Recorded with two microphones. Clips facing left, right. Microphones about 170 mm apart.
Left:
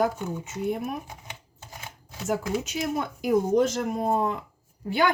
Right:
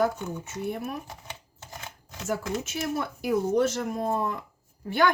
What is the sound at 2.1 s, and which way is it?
Speech, 10° left (ahead or behind).